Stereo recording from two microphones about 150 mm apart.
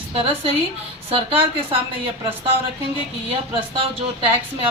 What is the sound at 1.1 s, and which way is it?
Speech, 40° right (ahead or behind).